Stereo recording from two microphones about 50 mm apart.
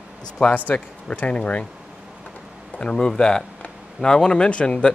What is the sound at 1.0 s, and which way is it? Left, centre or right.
Speech, left.